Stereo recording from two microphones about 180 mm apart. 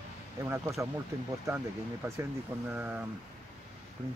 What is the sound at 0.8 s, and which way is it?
Speech, 15° right (ahead or behind).